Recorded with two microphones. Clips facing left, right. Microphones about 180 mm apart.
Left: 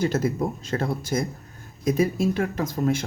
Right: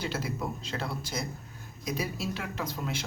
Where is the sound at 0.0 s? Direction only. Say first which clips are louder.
Left 10 dB; 45° left (ahead or behind).